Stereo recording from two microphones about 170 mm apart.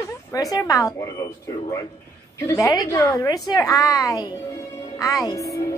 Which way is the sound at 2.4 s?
20° left (ahead or behind).